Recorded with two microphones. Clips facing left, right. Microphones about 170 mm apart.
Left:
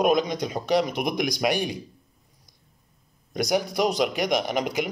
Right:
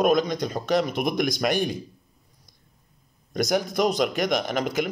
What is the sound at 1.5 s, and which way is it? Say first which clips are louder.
Speech: right 1 dB; 50° right (ahead or behind).